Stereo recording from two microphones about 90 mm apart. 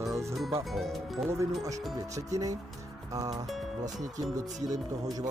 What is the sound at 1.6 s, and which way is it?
Speech, 40° right (ahead or behind).